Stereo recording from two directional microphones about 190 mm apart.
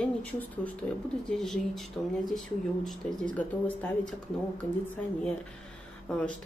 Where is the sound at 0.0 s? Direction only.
10° left (ahead or behind).